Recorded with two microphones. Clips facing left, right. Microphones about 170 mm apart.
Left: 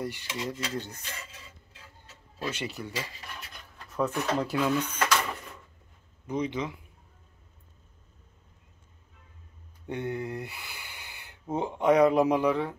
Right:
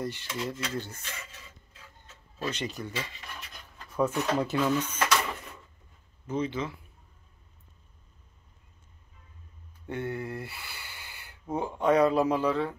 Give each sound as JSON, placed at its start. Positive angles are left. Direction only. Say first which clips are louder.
{"t": 0.0, "sound": "speech", "louder": "even", "side_deg": 10}
{"t": 2.3, "sound": "speech", "louder": "right 1 dB", "side_deg": 10}
{"t": 3.7, "sound": "speech", "louder": "right 2 dB", "side_deg": 0}
{"t": 4.6, "sound": "speech", "louder": "left 1 dB", "side_deg": 10}
{"t": 6.2, "sound": "speech", "louder": "even", "side_deg": 15}
{"t": 9.8, "sound": "a sound", "louder": "left 1 dB", "side_deg": 20}
{"t": 11.5, "sound": "speech", "louder": "left 1 dB", "side_deg": 20}